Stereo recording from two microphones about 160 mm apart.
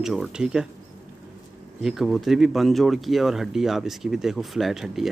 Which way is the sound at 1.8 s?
Centre (ahead or behind).